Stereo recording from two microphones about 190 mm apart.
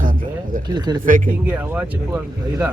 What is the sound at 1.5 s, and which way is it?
Speech, 10° right (ahead or behind).